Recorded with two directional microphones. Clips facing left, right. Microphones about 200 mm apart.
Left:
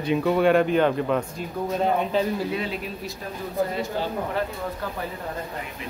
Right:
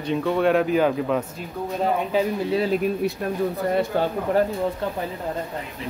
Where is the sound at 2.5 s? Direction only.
40° right (ahead or behind); by 4.1 s 60° right (ahead or behind).